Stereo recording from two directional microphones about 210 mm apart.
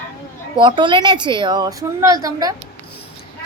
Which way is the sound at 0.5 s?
25° right (ahead or behind).